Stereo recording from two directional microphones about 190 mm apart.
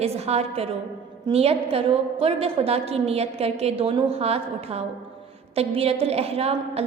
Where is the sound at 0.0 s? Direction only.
35° right (ahead or behind).